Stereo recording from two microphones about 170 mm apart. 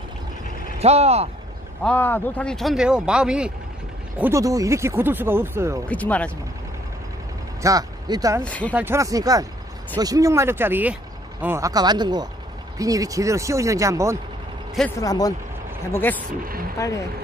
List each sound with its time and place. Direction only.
0.7 s speech: 40° right (ahead or behind)
1.8 s speech: 10° left (ahead or behind)
4.2 s speech: 20° right (ahead or behind)
5.9 s speech: 10° left (ahead or behind)
7.6 s speech: 20° right (ahead or behind)
8.5 s speech: 10° left (ahead or behind)
8.7 s speech: 15° right (ahead or behind)
15.0 s speech: 20° left (ahead or behind)